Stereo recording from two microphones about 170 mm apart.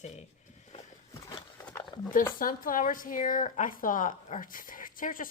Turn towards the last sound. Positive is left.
turn(degrees=55)  # may be behind; listen again after turning